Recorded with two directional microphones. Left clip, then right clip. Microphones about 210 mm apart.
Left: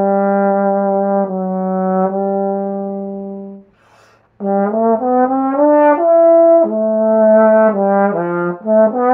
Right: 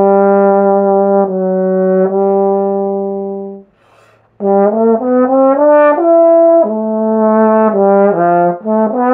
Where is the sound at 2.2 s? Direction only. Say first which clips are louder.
Right 6 dB; 40° right (ahead or behind).